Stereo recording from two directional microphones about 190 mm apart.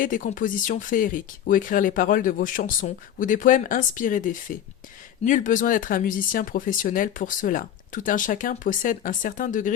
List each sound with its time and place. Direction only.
0.0 s speech: 45° left (ahead or behind)